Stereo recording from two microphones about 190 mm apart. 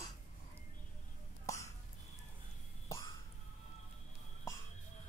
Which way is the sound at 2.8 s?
15° left (ahead or behind).